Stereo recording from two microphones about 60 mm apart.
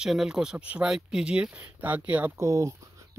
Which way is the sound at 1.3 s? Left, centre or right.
Right.